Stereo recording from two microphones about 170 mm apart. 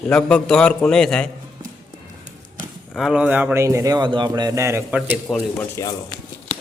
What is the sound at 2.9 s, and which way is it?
A man's voice, 5° right (ahead or behind).